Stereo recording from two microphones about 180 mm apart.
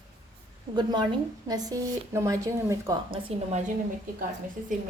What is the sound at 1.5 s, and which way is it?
A woman's voice, 20° right (ahead or behind).